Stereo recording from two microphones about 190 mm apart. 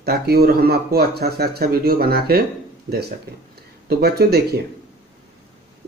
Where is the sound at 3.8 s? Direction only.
55° right (ahead or behind).